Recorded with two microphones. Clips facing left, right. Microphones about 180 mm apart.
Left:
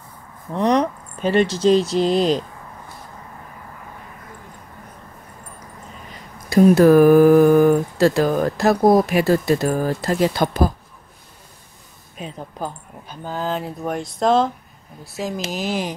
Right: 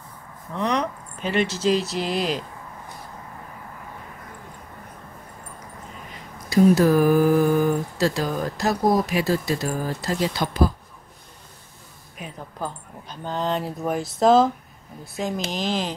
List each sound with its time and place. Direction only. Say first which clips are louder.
0.6 s speech: left 6 dB; 35° left (ahead or behind)
6.5 s speech: left 5 dB; 60° left (ahead or behind)
12.2 s speech: left 3 dB; 20° left (ahead or behind)